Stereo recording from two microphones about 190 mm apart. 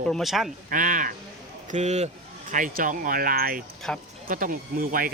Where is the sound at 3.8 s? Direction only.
5° left (ahead or behind).